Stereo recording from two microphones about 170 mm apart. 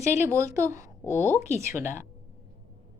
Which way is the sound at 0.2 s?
15° right (ahead or behind).